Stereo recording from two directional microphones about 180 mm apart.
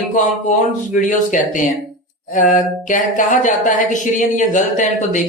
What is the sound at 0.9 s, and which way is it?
Speech, 45° left (ahead or behind).